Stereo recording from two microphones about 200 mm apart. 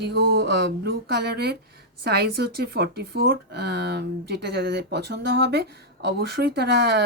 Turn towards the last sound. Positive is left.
turn(degrees=-55)  # may be behind; listen again after turning